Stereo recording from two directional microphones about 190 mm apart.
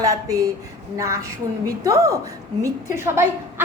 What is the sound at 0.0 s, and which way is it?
A woman's voice, 15° right (ahead or behind).